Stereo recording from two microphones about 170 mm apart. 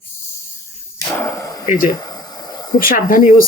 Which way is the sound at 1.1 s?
15° left (ahead or behind).